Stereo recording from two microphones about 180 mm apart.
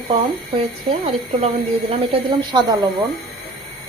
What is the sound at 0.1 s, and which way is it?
Speech, 30° right (ahead or behind).